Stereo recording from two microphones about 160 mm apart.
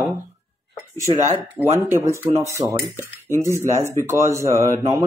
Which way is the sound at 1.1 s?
30° right (ahead or behind).